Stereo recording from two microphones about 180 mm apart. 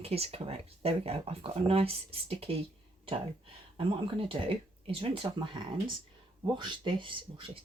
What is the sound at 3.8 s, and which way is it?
Speech, 30° right (ahead or behind).